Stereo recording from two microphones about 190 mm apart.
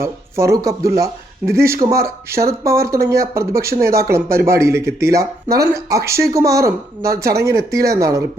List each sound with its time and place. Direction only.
0.0 s speech: 15° right (ahead or behind)